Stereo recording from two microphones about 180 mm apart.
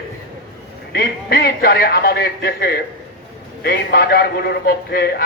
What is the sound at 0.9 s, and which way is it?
A man's voice, 55° left (ahead or behind).